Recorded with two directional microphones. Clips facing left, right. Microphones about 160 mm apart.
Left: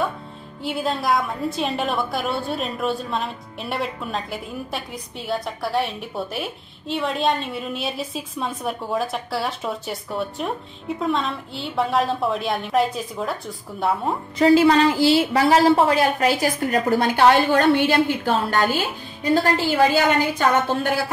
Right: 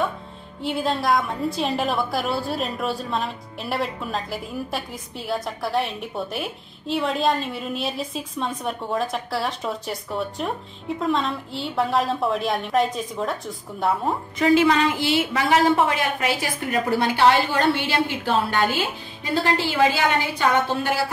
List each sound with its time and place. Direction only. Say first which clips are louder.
0.6 s a woman's voice: right 1 dB; centre (ahead or behind)
14.4 s a woman's voice: left 3 dB; 35° left (ahead or behind)
17.1 s a woman's voice: left 3 dB; 50° left (ahead or behind)